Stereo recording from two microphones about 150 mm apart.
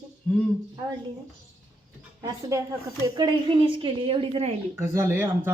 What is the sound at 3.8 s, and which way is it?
Speech, 35° right (ahead or behind).